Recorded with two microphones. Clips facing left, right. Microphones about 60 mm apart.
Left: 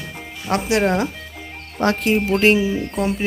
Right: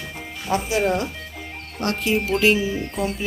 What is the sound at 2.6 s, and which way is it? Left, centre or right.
Speech, centre.